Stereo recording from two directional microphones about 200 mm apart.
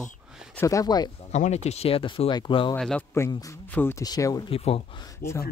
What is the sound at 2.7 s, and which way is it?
A man's voice, 5° left (ahead or behind).